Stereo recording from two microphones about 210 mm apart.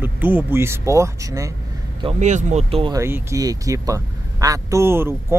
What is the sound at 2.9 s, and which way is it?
Speech, 15° right (ahead or behind).